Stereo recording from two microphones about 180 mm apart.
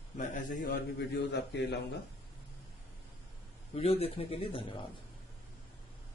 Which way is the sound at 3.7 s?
35° left (ahead or behind).